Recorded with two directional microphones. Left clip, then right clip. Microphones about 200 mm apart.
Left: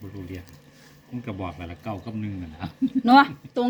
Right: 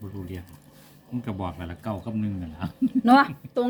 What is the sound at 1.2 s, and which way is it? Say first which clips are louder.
Speech: even; 45° right (ahead or behind).